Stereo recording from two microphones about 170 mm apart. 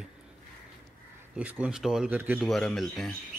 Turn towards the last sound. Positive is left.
turn(degrees=0)  # may be behind; listen again after turning